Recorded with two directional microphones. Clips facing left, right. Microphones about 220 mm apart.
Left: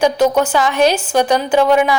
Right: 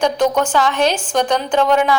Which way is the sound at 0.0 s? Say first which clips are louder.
Left 3 dB; 10° left (ahead or behind).